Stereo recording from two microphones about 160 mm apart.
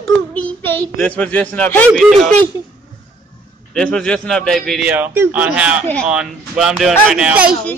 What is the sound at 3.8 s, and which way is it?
Speech, 5° left (ahead or behind).